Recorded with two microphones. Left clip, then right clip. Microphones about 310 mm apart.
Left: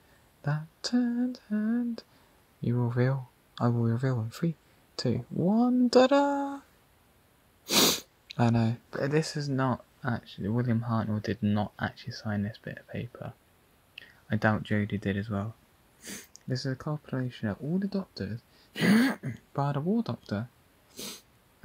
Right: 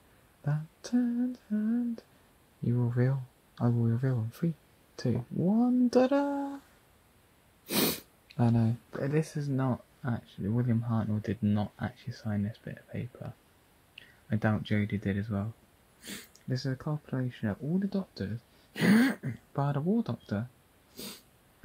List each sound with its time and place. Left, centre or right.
0.4 s a sound: left
1.5 s speech: left
7.6 s speech: left
13.9 s a sound: left
15.0 s speech: centre
16.0 s speech: centre
16.3 s speech: centre
20.9 s dog: centre